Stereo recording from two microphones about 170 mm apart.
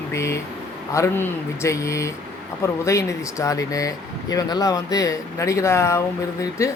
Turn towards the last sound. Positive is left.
turn(degrees=20)  # may be behind; listen again after turning